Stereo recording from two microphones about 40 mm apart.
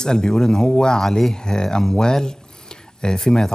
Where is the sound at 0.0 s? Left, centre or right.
Centre.